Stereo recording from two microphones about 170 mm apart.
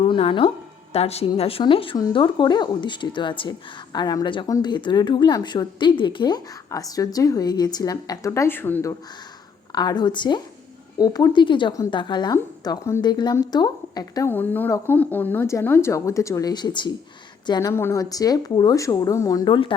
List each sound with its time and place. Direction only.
0.0 s speech: 35° left (ahead or behind); by 9.0 s 15° left (ahead or behind)
9.7 s speech: 25° left (ahead or behind)